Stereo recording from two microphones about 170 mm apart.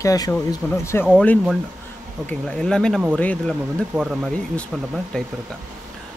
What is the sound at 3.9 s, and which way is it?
Speech, 5° right (ahead or behind).